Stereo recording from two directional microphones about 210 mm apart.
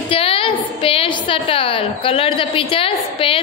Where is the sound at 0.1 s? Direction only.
25° left (ahead or behind).